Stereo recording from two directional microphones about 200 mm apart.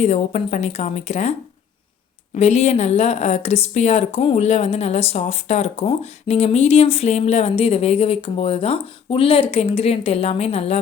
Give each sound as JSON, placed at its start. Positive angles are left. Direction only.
{"t": 0.0, "sound": "a woman's voice", "side_deg": 35}